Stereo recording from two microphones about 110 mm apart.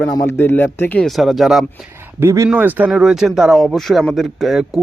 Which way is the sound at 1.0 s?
Centre (ahead or behind).